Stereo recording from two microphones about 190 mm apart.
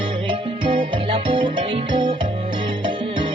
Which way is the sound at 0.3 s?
25° right (ahead or behind).